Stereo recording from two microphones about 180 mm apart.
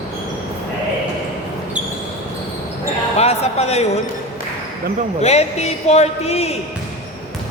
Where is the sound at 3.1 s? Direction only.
35° left (ahead or behind).